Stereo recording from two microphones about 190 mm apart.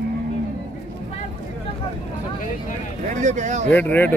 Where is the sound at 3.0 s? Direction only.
40° right (ahead or behind).